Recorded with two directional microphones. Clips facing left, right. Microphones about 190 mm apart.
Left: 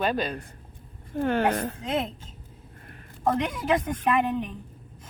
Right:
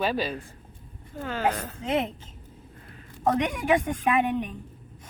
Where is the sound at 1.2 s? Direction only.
55° left (ahead or behind).